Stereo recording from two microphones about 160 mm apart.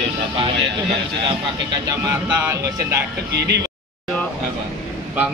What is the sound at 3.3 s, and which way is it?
Speech, 90° right.